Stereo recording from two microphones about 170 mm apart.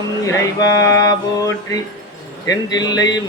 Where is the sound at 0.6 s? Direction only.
20° left (ahead or behind).